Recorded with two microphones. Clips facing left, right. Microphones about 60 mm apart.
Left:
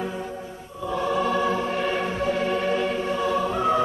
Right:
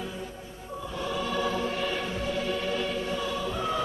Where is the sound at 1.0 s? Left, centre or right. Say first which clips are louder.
Left 6 dB; left.